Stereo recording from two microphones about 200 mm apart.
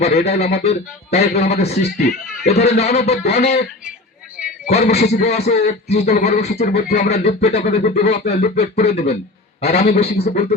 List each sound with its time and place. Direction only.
0.0 s a man's voice: 30° left (ahead or behind)